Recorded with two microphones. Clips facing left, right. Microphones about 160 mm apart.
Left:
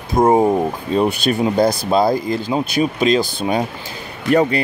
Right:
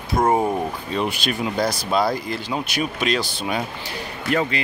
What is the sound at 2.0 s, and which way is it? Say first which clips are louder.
Speech: left 6 dB; 25° left (ahead or behind).